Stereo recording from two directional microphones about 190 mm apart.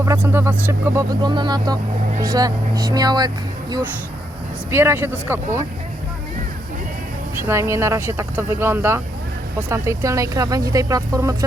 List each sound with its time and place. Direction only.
0.0 s speech: 15° right (ahead or behind)
7.4 s speech: 15° right (ahead or behind)